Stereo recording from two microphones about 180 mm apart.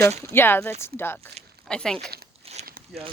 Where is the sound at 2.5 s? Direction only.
35° right (ahead or behind).